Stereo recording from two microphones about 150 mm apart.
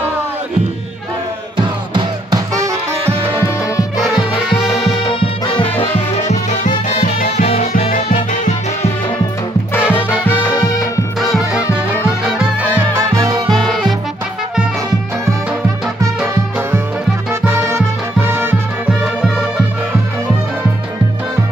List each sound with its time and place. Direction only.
2.0 s music: 25° right (ahead or behind)
3.7 s music: 25° left (ahead or behind)
5.8 s music: 55° left (ahead or behind)
9.8 s music: 15° left (ahead or behind)
10.5 s music: 25° left (ahead or behind)
11.1 s music: centre (ahead or behind)
12.9 s music: 20° right (ahead or behind)
16.2 s music: 10° right (ahead or behind)
19.2 s music: 5° right (ahead or behind)